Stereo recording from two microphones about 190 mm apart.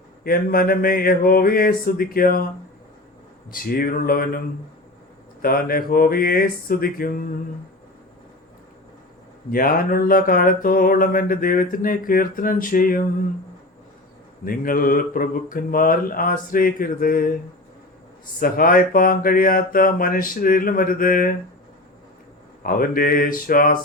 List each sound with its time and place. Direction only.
0.3 s mantra: 50° left (ahead or behind)
3.5 s mantra: 50° left (ahead or behind)
5.4 s mantra: 50° left (ahead or behind)
9.5 s mantra: 50° left (ahead or behind)
14.4 s mantra: 50° left (ahead or behind)
18.3 s mantra: 50° left (ahead or behind)
22.6 s mantra: 50° left (ahead or behind)